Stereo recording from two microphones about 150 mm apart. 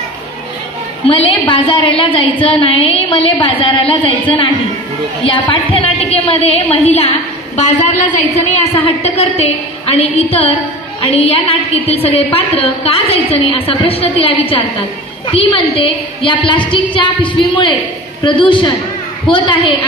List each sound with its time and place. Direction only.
1.0 s a woman's voice: 40° left (ahead or behind)